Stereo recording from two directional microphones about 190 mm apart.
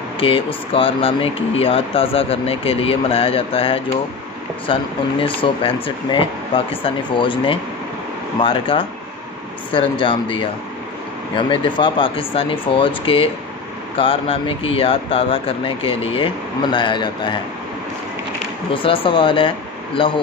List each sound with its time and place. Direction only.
0.2 s speech: 30° left (ahead or behind)
18.7 s speech: 25° left (ahead or behind)